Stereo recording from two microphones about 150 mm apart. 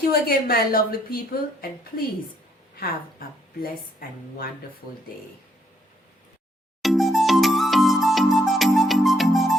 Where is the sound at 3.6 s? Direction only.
75° left (ahead or behind).